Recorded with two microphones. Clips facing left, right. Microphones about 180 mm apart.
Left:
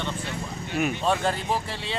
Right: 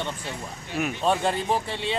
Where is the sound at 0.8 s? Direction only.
Centre (ahead or behind).